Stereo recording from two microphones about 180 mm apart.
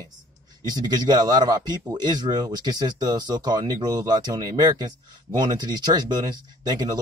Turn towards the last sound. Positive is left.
turn(degrees=-25)  # may be behind; listen again after turning